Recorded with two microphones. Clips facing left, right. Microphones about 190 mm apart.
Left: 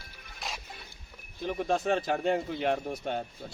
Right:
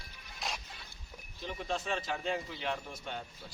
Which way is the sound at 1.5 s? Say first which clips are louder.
Left 8 dB; 55° left (ahead or behind).